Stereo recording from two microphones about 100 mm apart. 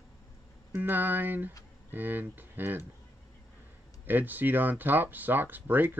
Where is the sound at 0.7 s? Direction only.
20° right (ahead or behind).